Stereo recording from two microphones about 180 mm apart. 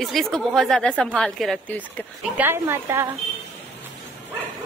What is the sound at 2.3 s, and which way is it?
Speech, 10° right (ahead or behind).